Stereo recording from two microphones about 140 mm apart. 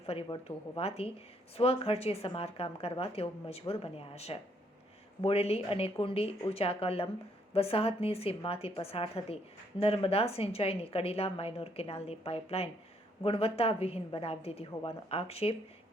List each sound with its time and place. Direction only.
0.0 s a woman's voice: 45° left (ahead or behind)